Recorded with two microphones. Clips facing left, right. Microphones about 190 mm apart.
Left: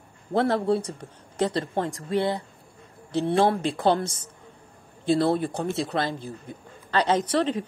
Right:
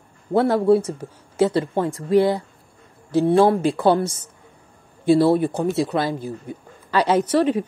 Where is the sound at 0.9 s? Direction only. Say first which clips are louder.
Right 7 dB; 5° right (ahead or behind).